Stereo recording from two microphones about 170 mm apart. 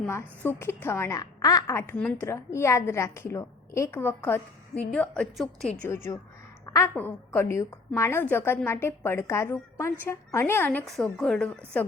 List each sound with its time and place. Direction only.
0.1 s a woman's voice: 15° left (ahead or behind)
5.9 s a woman's voice: 15° left (ahead or behind)